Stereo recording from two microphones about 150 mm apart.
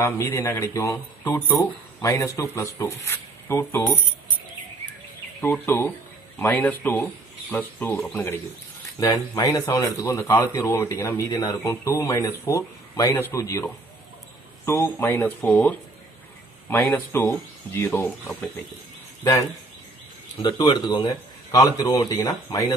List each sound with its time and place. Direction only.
0.0 s speech: 20° left (ahead or behind)
5.4 s speech: 15° left (ahead or behind)
8.1 s speech: 15° left (ahead or behind)
14.7 s speech: 15° left (ahead or behind)
19.2 s speech: 25° left (ahead or behind)